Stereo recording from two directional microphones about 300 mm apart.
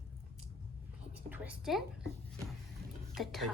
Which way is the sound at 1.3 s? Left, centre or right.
Centre.